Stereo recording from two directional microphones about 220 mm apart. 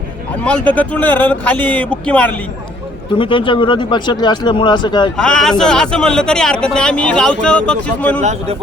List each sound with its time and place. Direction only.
0.4 s speech: 5° left (ahead or behind)
3.2 s speech: 25° left (ahead or behind)
5.1 s speech: 5° left (ahead or behind)
8.2 s a man's voice: 30° right (ahead or behind)